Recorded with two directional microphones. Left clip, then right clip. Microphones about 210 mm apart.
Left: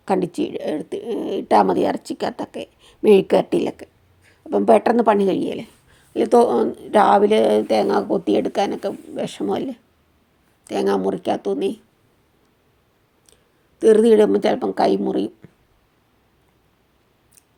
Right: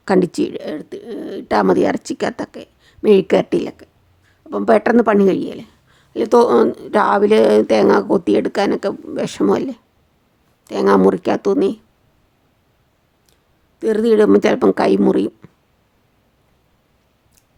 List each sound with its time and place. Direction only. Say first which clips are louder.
0.0 s speech: right 5 dB; 20° right (ahead or behind)
0.6 s speech: left 2 dB; centre (ahead or behind)
1.7 s a woman's voice: right 4 dB; 15° right (ahead or behind)
2.5 s a woman's voice: left 3 dB; 5° left (ahead or behind)
3.0 s a woman's voice: right 1 dB; 15° right (ahead or behind)
4.6 s a woman's voice: right 2 dB; 10° right (ahead or behind)
5.5 s a woman's voice: left 3 dB; centre (ahead or behind)
10.8 s speech: right 8 dB; 20° right (ahead or behind)
13.7 s speech: left 5 dB; 10° left (ahead or behind)
14.0 s speech: right 4 dB; 5° right (ahead or behind)
14.3 s a woman's voice: right 5 dB; 15° right (ahead or behind)